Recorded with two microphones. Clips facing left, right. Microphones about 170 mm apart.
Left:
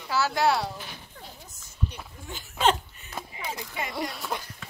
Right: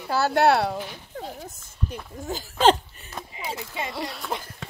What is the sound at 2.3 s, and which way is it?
Speech, 35° right (ahead or behind).